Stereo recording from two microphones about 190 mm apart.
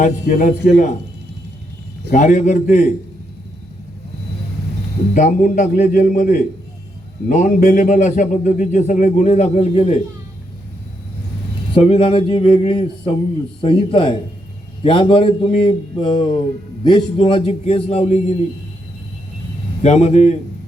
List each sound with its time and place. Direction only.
0.0 s speech: 40° left (ahead or behind)
2.0 s speech: 40° left (ahead or behind)
5.1 s a man's voice: 45° left (ahead or behind)
11.7 s a man's voice: 30° left (ahead or behind)
19.8 s speech: 35° left (ahead or behind)